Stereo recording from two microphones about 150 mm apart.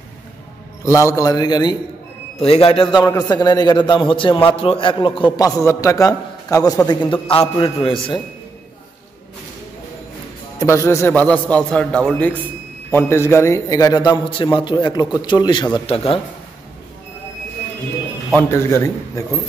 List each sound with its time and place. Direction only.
0.8 s a man's voice: 20° left (ahead or behind)
2.3 s a man's voice: 40° left (ahead or behind)
5.4 s a man's voice: 20° left (ahead or behind)
7.1 s a man's voice: 35° left (ahead or behind)
10.6 s a man's voice: 20° left (ahead or behind); by 16.2 s 40° left (ahead or behind)
18.5 s a man's voice: 15° left (ahead or behind)